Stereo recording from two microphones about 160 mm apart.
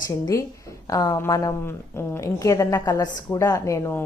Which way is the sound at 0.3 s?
20° left (ahead or behind).